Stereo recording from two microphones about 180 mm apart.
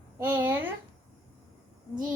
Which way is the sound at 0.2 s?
10° right (ahead or behind).